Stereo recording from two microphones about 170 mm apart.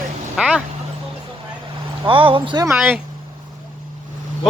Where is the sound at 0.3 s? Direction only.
5° right (ahead or behind).